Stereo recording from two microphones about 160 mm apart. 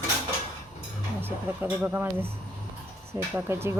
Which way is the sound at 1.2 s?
15° right (ahead or behind).